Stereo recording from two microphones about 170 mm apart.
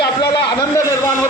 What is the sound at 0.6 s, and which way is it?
Speech, 15° left (ahead or behind).